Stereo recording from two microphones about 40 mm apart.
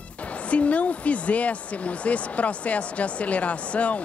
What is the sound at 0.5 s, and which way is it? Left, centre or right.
Speech, left.